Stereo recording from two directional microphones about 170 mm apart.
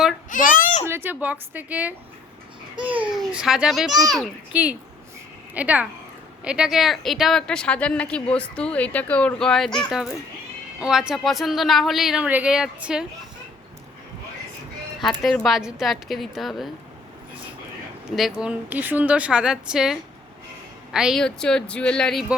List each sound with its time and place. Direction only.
0.3 s a sound: 50° left (ahead or behind)
0.9 s a woman's voice: 15° right (ahead or behind)
15.2 s a woman's voice: centre (ahead or behind)
18.2 s a woman's voice: 5° right (ahead or behind)